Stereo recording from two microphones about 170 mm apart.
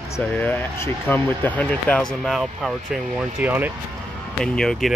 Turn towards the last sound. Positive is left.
turn(degrees=5)  # may be behind; listen again after turning